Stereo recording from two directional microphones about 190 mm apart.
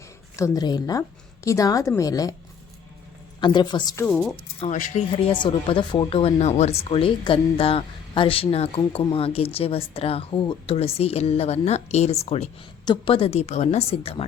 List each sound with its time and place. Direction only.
0.3 s a woman's voice: 15° left (ahead or behind)
3.4 s a woman's voice: 25° left (ahead or behind)
4.0 s speech: centre (ahead or behind)
4.6 s speech: 35° left (ahead or behind)